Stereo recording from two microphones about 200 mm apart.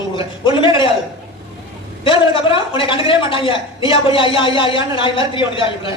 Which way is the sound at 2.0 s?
25° left (ahead or behind).